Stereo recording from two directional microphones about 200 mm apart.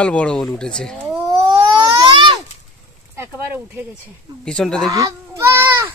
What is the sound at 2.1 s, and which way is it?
Speech, 25° right (ahead or behind).